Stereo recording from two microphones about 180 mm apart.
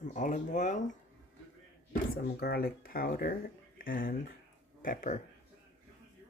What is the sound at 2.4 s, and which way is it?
Speech, 60° left (ahead or behind).